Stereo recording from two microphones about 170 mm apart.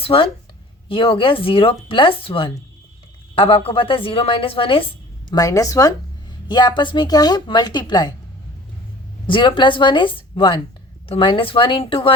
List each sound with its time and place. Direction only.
0.0 s a woman's voice: 30° left (ahead or behind)
5.3 s speech: 20° left (ahead or behind)
9.2 s speech: 30° left (ahead or behind)